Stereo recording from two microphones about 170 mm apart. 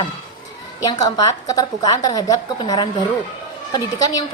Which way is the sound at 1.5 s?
25° left (ahead or behind).